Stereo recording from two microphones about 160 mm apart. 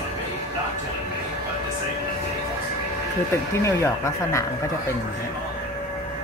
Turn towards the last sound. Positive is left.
turn(degrees=20)  # may be behind; listen again after turning